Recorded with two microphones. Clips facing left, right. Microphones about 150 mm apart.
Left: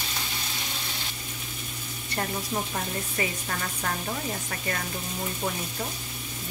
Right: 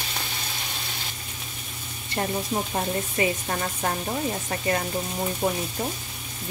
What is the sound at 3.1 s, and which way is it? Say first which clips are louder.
Speech: right 6 dB; 30° right (ahead or behind).